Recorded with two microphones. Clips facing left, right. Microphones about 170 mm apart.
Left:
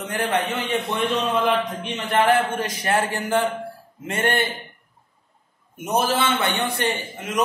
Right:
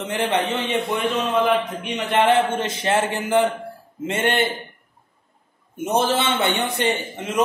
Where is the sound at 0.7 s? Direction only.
5° right (ahead or behind).